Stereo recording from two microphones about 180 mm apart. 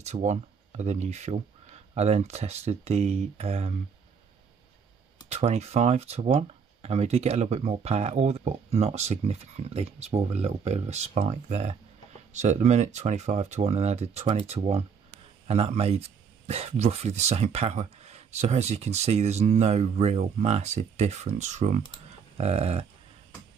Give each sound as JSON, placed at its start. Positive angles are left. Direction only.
{"t": 0.0, "sound": "a man's voice", "side_deg": -40}
{"t": 5.3, "sound": "a man's voice", "side_deg": -35}